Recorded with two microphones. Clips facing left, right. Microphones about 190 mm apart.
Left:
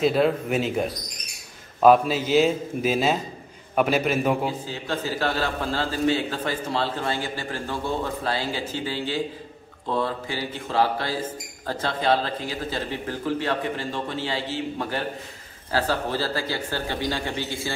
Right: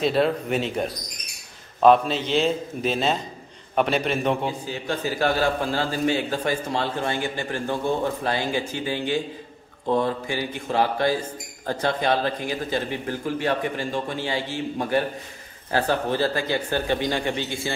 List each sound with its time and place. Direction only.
0.0 s a man's voice: 5° left (ahead or behind)
4.6 s a man's voice: 15° right (ahead or behind)
10.2 s a man's voice: 15° right (ahead or behind)